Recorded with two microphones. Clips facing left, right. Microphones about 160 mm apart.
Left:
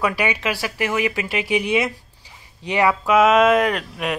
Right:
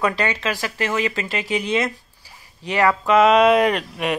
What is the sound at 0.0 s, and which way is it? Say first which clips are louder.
Speech: even; 10° left (ahead or behind).